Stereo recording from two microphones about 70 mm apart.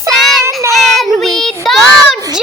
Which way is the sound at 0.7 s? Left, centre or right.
Centre.